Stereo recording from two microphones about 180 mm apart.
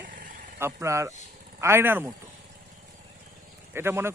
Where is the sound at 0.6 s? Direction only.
15° right (ahead or behind).